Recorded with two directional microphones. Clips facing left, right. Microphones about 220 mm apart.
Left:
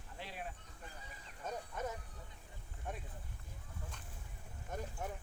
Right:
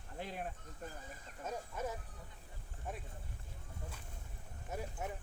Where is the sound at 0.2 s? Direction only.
50° right (ahead or behind).